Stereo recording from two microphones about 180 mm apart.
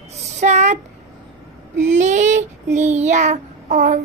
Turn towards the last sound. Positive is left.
turn(degrees=-45)  # may be behind; listen again after turning